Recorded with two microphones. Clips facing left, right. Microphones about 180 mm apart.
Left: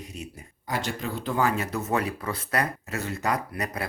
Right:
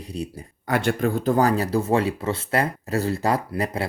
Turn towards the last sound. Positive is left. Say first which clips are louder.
# right 6 dB
turn(degrees=-30)  # may be behind; listen again after turning